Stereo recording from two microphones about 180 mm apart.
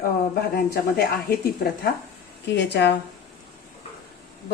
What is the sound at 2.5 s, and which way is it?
Speech, 70° left (ahead or behind).